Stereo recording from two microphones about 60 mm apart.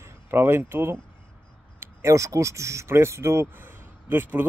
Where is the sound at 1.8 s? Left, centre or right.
Right.